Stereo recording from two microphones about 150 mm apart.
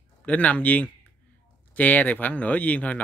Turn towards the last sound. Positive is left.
turn(degrees=10)  # may be behind; listen again after turning